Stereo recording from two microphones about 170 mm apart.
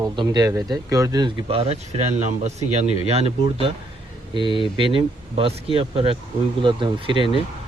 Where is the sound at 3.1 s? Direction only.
35° right (ahead or behind).